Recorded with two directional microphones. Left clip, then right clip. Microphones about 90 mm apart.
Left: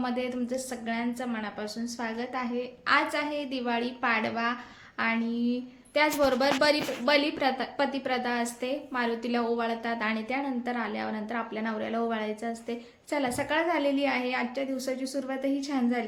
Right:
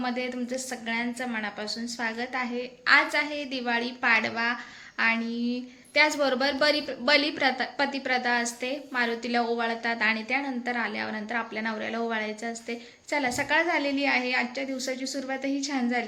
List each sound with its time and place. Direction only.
0.0 s a woman's voice: 20° left (ahead or behind)
7.0 s a woman's voice: 10° left (ahead or behind)
7.8 s a woman's voice: 25° left (ahead or behind)